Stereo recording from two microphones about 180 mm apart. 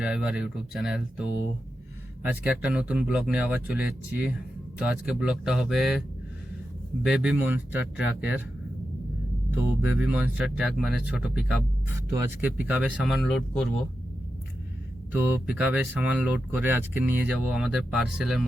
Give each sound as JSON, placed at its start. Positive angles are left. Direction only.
{"t": 0.0, "sound": "speech", "side_deg": -5}
{"t": 7.0, "sound": "speech", "side_deg": -5}
{"t": 10.0, "sound": "speech", "side_deg": -10}
{"t": 15.3, "sound": "speech", "side_deg": -5}